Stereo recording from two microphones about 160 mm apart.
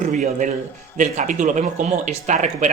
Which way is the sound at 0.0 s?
50° right (ahead or behind).